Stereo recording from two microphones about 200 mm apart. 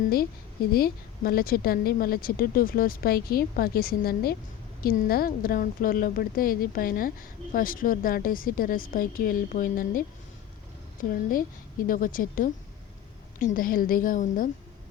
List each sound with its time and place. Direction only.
0.7 s a woman's voice: 50° left (ahead or behind)
11.1 s a woman's voice: 45° left (ahead or behind)